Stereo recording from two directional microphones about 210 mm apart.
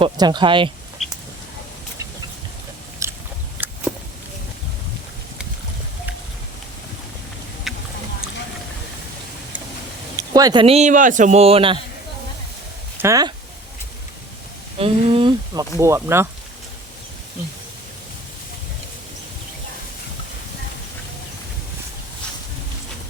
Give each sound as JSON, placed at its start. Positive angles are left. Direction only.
{"t": 0.0, "sound": "speech", "side_deg": -20}
{"t": 1.0, "sound": "a sound", "side_deg": 0}
{"t": 3.0, "sound": "biting", "side_deg": -15}
{"t": 3.6, "sound": "a sound", "side_deg": -10}
{"t": 7.7, "sound": "a sound", "side_deg": 0}
{"t": 10.2, "sound": "speech", "side_deg": -20}
{"t": 13.0, "sound": "speech", "side_deg": -15}
{"t": 14.8, "sound": "speech", "side_deg": -25}
{"t": 15.8, "sound": "speech", "side_deg": -15}